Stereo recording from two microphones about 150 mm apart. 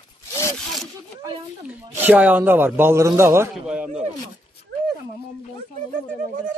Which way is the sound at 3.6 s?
5° right (ahead or behind).